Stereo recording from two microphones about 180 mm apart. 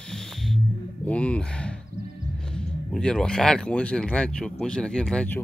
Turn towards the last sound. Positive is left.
turn(degrees=5)  # may be behind; listen again after turning